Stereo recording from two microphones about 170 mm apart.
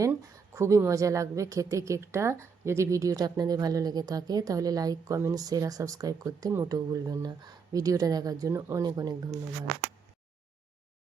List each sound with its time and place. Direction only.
0.0 s a woman's voice: 20° right (ahead or behind)